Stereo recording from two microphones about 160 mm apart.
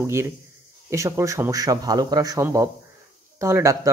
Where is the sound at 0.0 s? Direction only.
15° right (ahead or behind).